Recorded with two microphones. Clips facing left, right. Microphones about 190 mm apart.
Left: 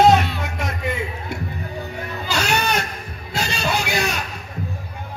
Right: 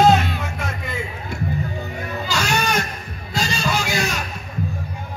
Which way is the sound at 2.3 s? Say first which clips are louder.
Left 1 dB; 60° left (ahead or behind).